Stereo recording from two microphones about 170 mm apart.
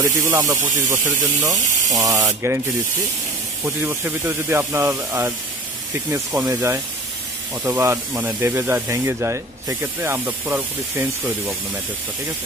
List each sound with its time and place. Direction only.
0.0 s speech: 20° right (ahead or behind)
3.6 s speech: 15° right (ahead or behind)